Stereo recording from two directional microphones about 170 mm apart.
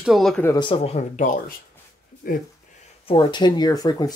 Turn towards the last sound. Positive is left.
turn(degrees=20)  # may be behind; listen again after turning